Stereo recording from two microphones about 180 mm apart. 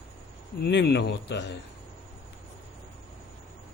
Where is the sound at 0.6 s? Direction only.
70° left (ahead or behind).